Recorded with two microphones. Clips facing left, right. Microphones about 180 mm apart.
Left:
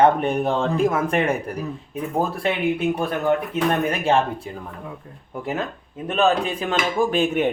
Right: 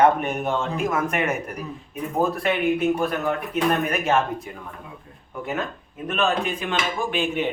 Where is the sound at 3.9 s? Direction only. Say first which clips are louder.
Left 2 dB; 30° left (ahead or behind).